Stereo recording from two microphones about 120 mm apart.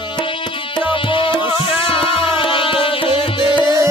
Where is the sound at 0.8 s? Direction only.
45° left (ahead or behind).